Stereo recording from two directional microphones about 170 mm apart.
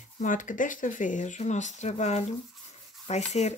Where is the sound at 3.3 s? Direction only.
40° left (ahead or behind).